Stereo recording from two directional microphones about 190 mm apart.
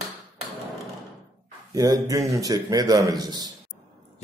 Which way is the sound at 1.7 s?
20° right (ahead or behind).